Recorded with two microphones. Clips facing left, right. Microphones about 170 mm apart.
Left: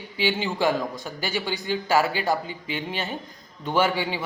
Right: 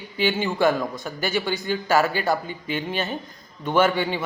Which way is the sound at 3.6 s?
15° left (ahead or behind).